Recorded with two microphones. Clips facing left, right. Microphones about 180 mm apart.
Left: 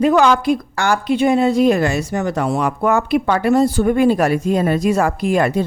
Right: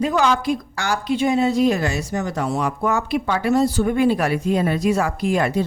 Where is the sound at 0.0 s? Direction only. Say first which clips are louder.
Left 6 dB; 65° left (ahead or behind).